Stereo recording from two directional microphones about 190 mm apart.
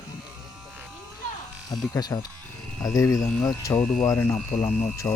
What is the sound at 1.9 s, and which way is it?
Speech, 20° left (ahead or behind).